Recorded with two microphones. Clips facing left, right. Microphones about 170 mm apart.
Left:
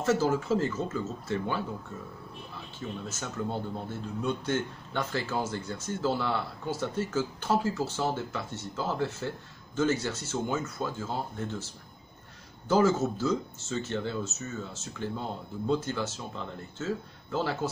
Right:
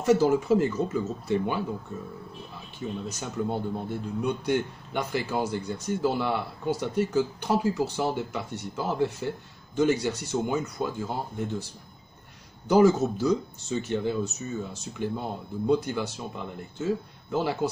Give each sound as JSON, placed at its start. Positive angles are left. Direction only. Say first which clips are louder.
{"t": 0.0, "sound": "speech", "louder": "right 5 dB", "side_deg": -15}
{"t": 3.1, "sound": "speech", "louder": "right 4 dB", "side_deg": -15}